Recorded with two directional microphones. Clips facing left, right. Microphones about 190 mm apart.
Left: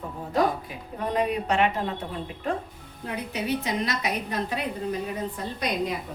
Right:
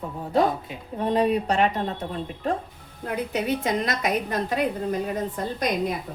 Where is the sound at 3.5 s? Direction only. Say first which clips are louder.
Even; 50° right (ahead or behind).